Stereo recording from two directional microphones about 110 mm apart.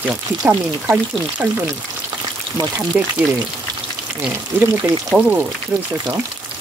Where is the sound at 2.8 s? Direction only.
10° right (ahead or behind).